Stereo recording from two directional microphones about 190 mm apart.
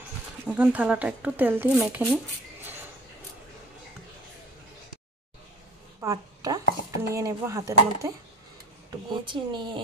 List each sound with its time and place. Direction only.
0.5 s speech: 5° right (ahead or behind)
5.9 s a sound: 15° right (ahead or behind)
7.0 s speech: 15° right (ahead or behind)
9.3 s speech: 25° right (ahead or behind)